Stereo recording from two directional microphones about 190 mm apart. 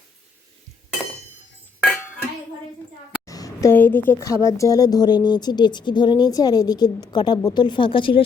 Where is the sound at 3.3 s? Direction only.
15° left (ahead or behind).